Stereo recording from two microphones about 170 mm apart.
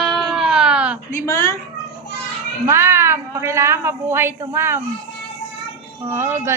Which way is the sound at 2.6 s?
15° right (ahead or behind).